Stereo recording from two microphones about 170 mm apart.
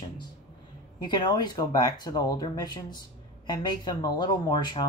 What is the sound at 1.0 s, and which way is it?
Speech, 25° left (ahead or behind).